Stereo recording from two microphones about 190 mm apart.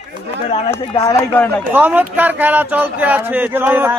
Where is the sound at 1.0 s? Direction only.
15° left (ahead or behind).